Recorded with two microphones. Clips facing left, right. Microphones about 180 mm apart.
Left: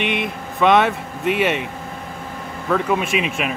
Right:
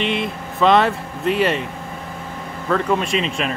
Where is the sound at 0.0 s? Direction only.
60° left (ahead or behind).